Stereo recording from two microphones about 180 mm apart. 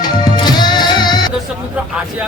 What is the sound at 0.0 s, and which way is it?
Music, 25° left (ahead or behind).